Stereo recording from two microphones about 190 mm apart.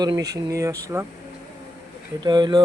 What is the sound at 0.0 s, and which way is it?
Speech, 20° right (ahead or behind).